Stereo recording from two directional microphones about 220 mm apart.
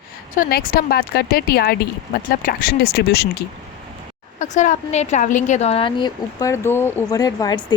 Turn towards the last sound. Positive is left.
turn(degrees=15)  # may be behind; listen again after turning